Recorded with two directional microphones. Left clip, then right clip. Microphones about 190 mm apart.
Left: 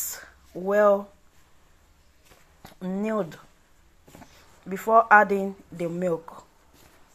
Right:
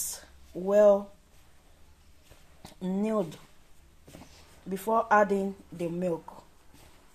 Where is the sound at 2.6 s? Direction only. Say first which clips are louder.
Left 1 dB; 5° left (ahead or behind).